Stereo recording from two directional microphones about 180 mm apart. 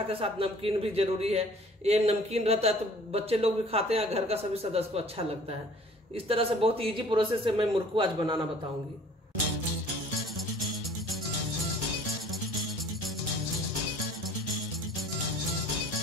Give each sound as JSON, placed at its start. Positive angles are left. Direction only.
{"t": 0.2, "sound": "a man's voice", "side_deg": -30}